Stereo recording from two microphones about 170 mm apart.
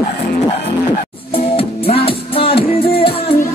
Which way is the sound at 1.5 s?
35° left (ahead or behind).